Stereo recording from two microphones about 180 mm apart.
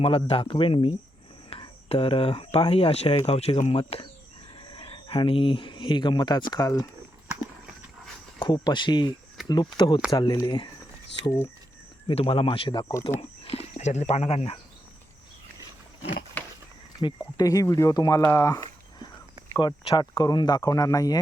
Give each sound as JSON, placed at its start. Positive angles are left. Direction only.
{"t": 0.0, "sound": "speech", "side_deg": 30}
{"t": 8.4, "sound": "speech", "side_deg": 25}
{"t": 12.0, "sound": "speech", "side_deg": 30}
{"t": 13.1, "sound": "speech", "side_deg": 35}
{"t": 17.0, "sound": "speech", "side_deg": 25}